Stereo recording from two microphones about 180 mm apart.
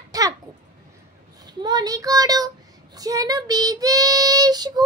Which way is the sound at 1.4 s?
20° right (ahead or behind).